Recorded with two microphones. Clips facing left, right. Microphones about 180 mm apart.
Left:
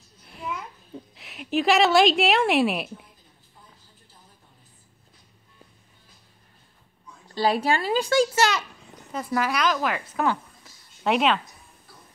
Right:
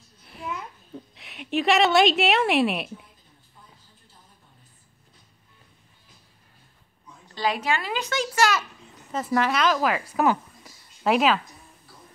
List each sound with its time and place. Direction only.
0.2 s a sound: centre (ahead or behind)
7.3 s speech: 35° left (ahead or behind)
9.1 s a woman's voice: centre (ahead or behind)